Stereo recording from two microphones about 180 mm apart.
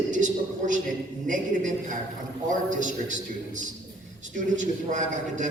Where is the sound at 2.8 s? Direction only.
45° right (ahead or behind).